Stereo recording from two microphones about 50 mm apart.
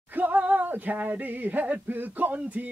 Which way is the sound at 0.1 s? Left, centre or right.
Right.